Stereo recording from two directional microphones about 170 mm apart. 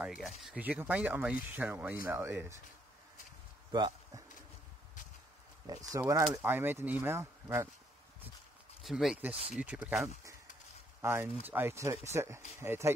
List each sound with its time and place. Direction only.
0.1 s speech: centre (ahead or behind)
3.7 s speech: 25° right (ahead or behind)
5.7 s speech: 20° right (ahead or behind)
8.8 s speech: centre (ahead or behind)
11.0 s speech: 15° right (ahead or behind)